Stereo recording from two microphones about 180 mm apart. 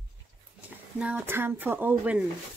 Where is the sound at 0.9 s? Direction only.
10° right (ahead or behind).